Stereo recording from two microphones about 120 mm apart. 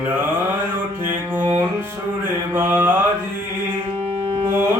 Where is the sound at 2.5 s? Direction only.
15° right (ahead or behind).